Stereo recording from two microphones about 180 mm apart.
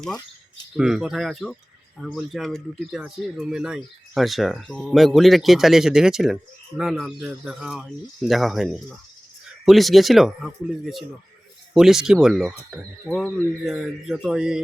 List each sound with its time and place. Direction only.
0.8 s speech: 5° right (ahead or behind)